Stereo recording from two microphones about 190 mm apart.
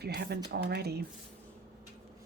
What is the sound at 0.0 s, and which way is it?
Speech, 60° right (ahead or behind).